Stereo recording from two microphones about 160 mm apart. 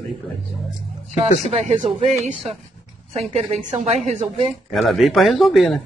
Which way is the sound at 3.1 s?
40° right (ahead or behind).